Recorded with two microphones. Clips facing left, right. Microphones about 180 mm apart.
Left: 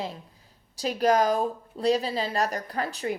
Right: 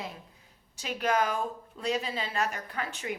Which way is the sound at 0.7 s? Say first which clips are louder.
Left 6 dB; 35° left (ahead or behind).